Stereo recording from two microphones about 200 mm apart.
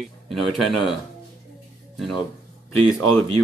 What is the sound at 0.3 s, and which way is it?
Speech, centre (ahead or behind).